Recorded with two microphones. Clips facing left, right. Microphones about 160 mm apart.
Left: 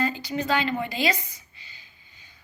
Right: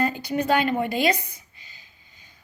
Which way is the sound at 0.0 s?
55° right (ahead or behind).